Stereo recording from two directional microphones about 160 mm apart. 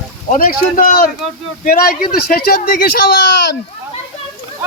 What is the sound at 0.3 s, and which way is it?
Speech, 55° left (ahead or behind).